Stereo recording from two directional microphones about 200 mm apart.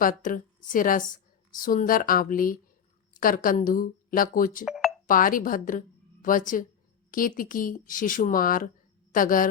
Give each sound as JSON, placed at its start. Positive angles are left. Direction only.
{"t": 0.0, "sound": "speech", "side_deg": 45}
{"t": 4.6, "sound": "a sound", "side_deg": 0}
{"t": 5.0, "sound": "speech", "side_deg": 45}